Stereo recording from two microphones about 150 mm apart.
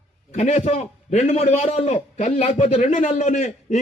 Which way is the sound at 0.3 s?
50° left (ahead or behind).